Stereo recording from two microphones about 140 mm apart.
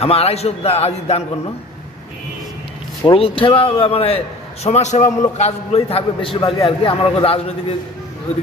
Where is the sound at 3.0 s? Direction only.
40° left (ahead or behind).